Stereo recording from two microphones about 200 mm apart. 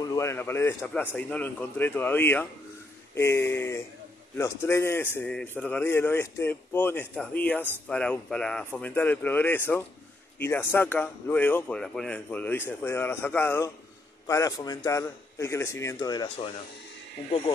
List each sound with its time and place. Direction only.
0.0 s speech: 15° left (ahead or behind)